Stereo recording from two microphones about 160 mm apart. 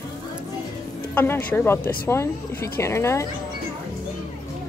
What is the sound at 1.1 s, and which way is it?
Speech, 10° left (ahead or behind).